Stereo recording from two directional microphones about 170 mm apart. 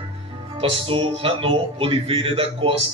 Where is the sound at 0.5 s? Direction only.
35° right (ahead or behind).